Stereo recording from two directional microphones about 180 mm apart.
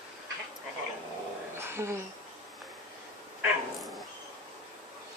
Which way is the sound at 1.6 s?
15° right (ahead or behind).